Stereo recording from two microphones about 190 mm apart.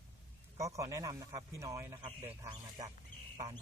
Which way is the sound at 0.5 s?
15° right (ahead or behind).